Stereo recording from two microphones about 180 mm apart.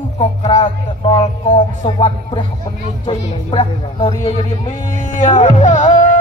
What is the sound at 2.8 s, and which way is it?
Speech, 30° left (ahead or behind).